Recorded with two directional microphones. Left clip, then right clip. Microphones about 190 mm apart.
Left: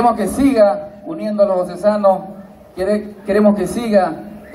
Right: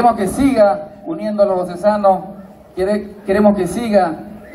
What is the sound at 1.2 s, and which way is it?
A man's voice, 35° left (ahead or behind).